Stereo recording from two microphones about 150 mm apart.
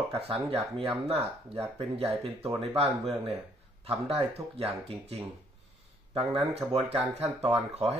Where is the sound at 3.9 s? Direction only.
40° right (ahead or behind).